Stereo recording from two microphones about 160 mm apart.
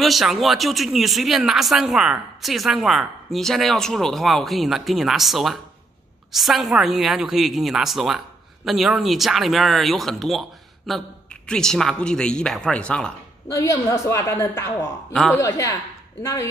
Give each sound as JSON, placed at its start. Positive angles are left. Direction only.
{"t": 0.0, "sound": "speech", "side_deg": 0}
{"t": 13.5, "sound": "a woman's voice", "side_deg": 20}